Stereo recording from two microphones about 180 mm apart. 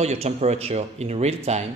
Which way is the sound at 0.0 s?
35° right (ahead or behind).